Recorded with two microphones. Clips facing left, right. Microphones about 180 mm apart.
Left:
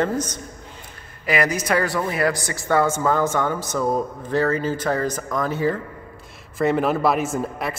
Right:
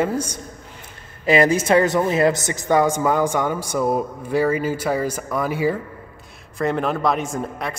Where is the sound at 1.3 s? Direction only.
25° right (ahead or behind); by 5.8 s 10° right (ahead or behind).